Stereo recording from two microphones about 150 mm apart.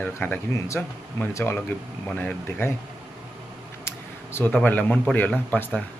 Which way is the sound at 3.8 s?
15° left (ahead or behind).